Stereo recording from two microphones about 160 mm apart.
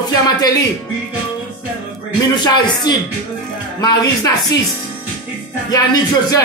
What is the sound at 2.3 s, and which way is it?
Speech, 25° left (ahead or behind).